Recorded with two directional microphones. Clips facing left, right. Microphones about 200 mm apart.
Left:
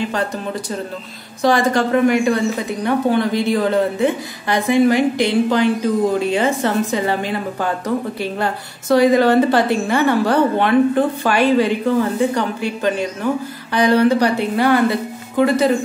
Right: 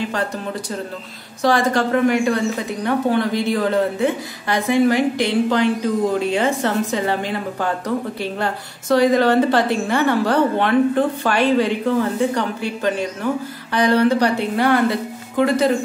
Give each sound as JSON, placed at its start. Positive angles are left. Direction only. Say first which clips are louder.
{"t": 1.4, "sound": "a woman's voice", "louder": "left 2 dB", "side_deg": 15}